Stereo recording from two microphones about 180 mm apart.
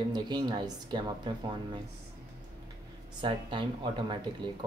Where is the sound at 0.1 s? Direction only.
25° right (ahead or behind).